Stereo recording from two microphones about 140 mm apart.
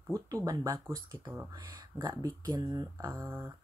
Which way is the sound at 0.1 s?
25° right (ahead or behind).